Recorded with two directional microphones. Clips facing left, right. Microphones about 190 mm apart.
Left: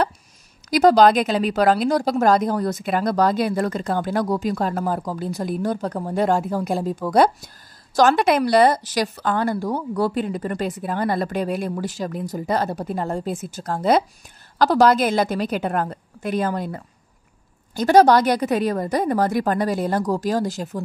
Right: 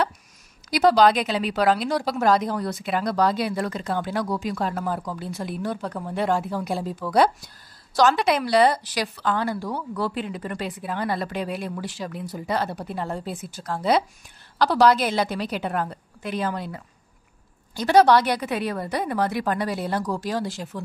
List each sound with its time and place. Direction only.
0.7 s a woman's voice: 45° left (ahead or behind)